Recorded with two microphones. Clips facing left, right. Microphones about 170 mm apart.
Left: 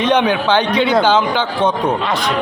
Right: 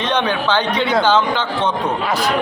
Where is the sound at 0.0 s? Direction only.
10° left (ahead or behind).